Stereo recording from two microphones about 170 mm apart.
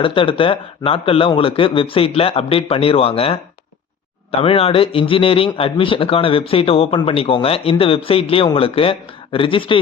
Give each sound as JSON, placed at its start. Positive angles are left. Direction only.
{"t": 0.0, "sound": "a man's voice", "side_deg": 30}